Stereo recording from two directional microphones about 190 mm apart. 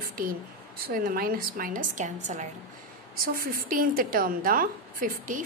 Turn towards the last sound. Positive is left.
turn(degrees=-45)  # may be behind; listen again after turning